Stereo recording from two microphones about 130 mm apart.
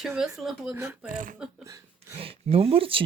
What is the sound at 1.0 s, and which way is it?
Speech, 90° right.